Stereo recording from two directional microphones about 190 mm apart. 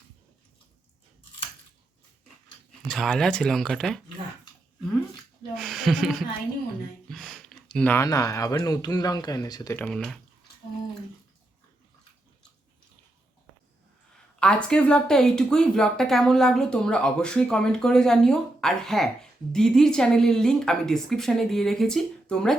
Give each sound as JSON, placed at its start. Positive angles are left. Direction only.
{"t": 2.8, "sound": "speech", "side_deg": 0}
{"t": 5.5, "sound": "a sound", "side_deg": 0}
{"t": 7.1, "sound": "speech", "side_deg": 0}
{"t": 9.8, "sound": "speech", "side_deg": 5}
{"t": 14.3, "sound": "speech", "side_deg": 5}